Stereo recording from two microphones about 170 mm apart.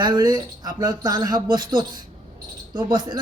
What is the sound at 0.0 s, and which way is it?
A man's voice, 25° right (ahead or behind).